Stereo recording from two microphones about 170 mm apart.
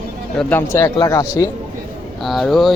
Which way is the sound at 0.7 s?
20° left (ahead or behind).